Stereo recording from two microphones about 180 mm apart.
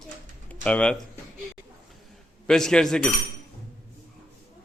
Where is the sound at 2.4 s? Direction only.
5° left (ahead or behind).